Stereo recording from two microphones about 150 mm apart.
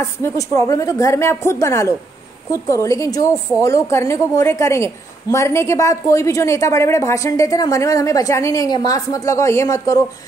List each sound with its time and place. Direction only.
0.2 s a woman's voice: 20° left (ahead or behind)